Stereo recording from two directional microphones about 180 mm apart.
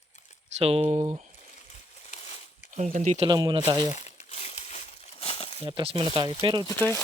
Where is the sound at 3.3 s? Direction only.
25° right (ahead or behind).